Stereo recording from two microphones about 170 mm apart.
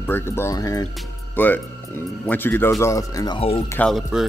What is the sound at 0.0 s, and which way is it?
Speech, 15° left (ahead or behind).